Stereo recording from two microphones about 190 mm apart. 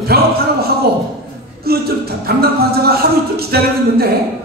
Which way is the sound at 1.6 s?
55° right (ahead or behind).